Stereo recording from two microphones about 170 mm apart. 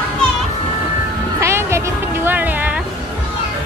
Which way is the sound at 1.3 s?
15° right (ahead or behind).